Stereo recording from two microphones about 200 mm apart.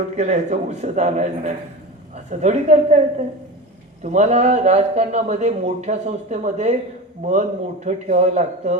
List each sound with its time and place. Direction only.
0.2 s speech: 35° right (ahead or behind)
7.9 s speech: 35° right (ahead or behind)